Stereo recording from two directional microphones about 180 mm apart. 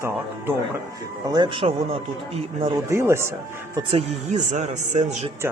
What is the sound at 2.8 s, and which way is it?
Speech, 15° right (ahead or behind).